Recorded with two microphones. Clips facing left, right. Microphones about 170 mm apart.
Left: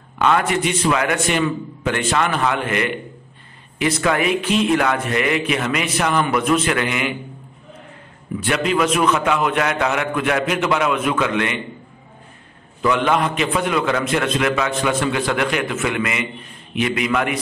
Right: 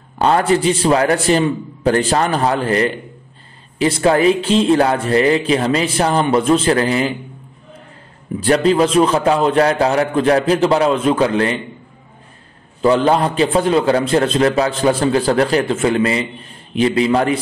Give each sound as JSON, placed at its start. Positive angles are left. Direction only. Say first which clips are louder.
{"t": 0.2, "sound": "speech", "louder": "right 4 dB", "side_deg": -35}
{"t": 8.4, "sound": "speech", "louder": "right 6 dB", "side_deg": -35}
{"t": 12.8, "sound": "speech", "louder": "right 5 dB", "side_deg": -35}